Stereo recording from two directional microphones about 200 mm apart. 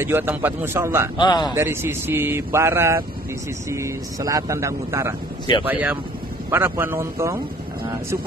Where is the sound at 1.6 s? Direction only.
10° right (ahead or behind).